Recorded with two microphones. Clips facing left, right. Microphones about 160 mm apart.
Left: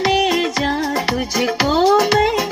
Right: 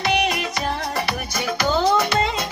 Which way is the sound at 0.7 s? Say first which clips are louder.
Left 6 dB; 90° left.